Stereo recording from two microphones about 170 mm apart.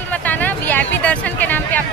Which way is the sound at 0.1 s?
10° left (ahead or behind).